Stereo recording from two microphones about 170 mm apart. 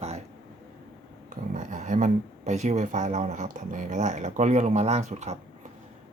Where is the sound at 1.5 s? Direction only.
45° right (ahead or behind).